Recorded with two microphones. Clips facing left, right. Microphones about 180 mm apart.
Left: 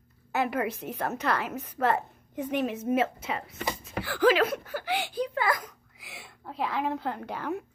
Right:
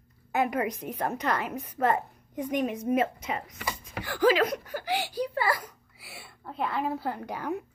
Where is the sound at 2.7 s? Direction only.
5° left (ahead or behind).